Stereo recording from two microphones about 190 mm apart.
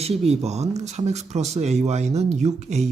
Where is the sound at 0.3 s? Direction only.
35° right (ahead or behind).